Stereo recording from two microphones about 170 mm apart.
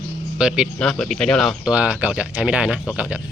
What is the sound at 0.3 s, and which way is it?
Speech, 5° right (ahead or behind).